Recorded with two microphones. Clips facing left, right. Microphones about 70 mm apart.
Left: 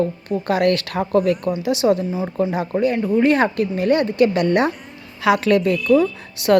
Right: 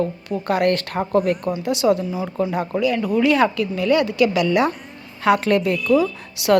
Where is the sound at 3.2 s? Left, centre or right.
Left.